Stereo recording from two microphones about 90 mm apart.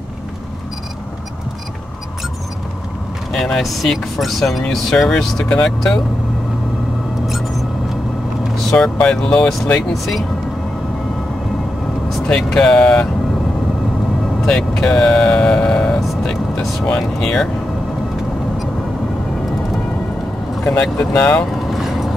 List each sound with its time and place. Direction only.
3.3 s speech: centre (ahead or behind)
7.2 s music: centre (ahead or behind)
8.6 s speech: 10° left (ahead or behind)
12.3 s speech: 5° left (ahead or behind)
14.4 s speech: 5° left (ahead or behind)
20.6 s speech: 10° left (ahead or behind)
21.5 s vehicle: centre (ahead or behind)